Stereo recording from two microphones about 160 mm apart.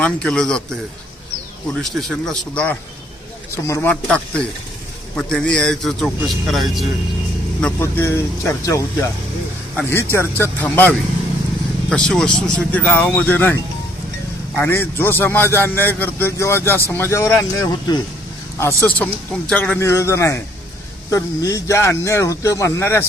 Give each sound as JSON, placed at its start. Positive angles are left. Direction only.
{"t": 0.0, "sound": "a man's voice", "side_deg": 5}
{"t": 1.8, "sound": "a man's voice", "side_deg": 0}
{"t": 7.6, "sound": "a man's voice", "side_deg": 15}